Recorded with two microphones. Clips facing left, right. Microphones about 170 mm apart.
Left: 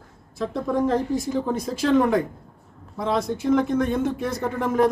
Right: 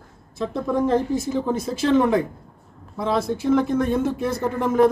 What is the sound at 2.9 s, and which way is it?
Speech, 5° right (ahead or behind).